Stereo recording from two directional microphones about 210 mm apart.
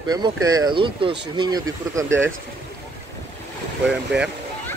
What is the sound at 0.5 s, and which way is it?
Speech, 20° right (ahead or behind).